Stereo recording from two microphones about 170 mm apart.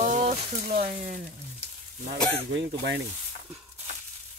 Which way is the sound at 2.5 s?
90° right.